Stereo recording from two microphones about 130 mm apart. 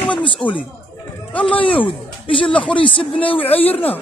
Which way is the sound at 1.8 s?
40° left (ahead or behind).